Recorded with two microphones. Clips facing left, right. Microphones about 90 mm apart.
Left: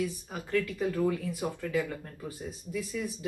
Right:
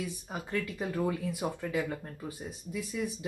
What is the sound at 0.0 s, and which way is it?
Speech, 20° right (ahead or behind).